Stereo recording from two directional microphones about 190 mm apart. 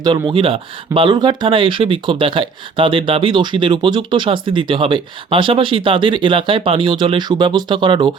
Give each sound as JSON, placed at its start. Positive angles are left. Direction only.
{"t": 0.0, "sound": "speech", "side_deg": -25}